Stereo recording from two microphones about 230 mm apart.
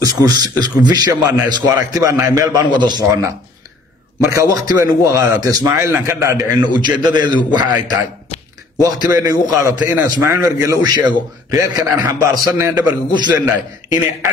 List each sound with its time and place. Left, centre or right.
0.0 s a man's voice: centre
1.2 s a man's voice: centre
8.7 s a man's voice: centre